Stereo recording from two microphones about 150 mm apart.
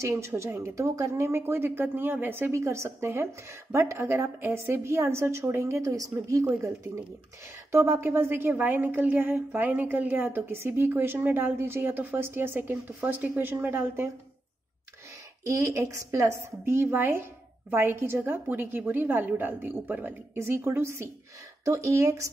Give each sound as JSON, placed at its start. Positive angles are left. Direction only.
{"t": 0.0, "sound": "a woman's voice", "side_deg": -20}
{"t": 15.4, "sound": "a woman's voice", "side_deg": -20}